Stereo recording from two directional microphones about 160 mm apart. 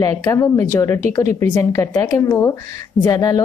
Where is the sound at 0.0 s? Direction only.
20° left (ahead or behind).